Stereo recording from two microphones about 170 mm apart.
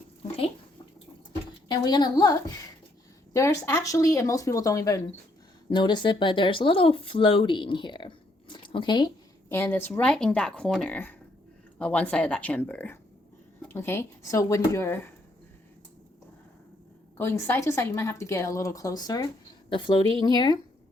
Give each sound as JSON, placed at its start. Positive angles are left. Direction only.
{"t": 1.6, "sound": "speech", "side_deg": 25}
{"t": 9.5, "sound": "a woman's voice", "side_deg": 15}
{"t": 17.2, "sound": "a woman's voice", "side_deg": 15}
{"t": 20.2, "sound": "speech", "side_deg": 25}